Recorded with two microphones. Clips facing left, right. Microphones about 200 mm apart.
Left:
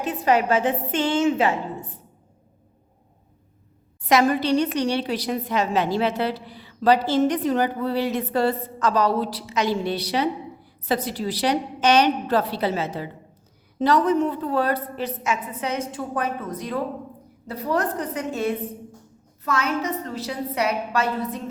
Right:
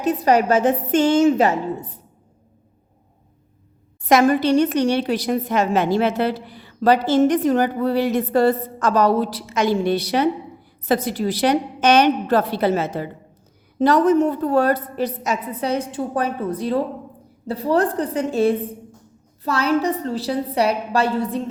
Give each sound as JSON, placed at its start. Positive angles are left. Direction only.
{"t": 0.0, "sound": "a woman's voice", "side_deg": -40}
{"t": 4.1, "sound": "a woman's voice", "side_deg": -50}